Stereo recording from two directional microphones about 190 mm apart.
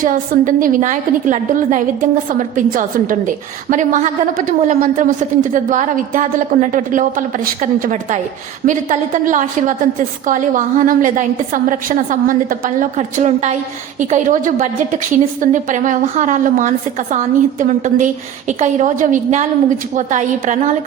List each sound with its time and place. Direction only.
0.0 s a woman's voice: 45° right (ahead or behind)